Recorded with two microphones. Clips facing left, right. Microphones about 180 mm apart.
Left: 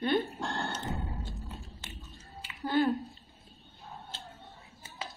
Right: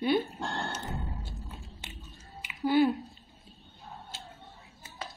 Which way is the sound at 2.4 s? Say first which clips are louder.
Right 4 dB; 15° right (ahead or behind).